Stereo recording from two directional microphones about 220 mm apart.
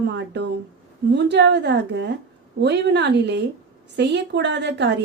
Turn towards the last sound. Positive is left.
turn(degrees=-50)  # may be behind; listen again after turning